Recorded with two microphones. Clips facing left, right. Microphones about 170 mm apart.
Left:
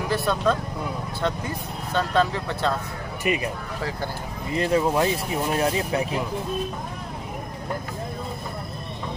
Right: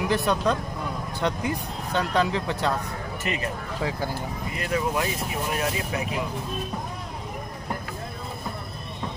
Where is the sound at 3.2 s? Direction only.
15° left (ahead or behind).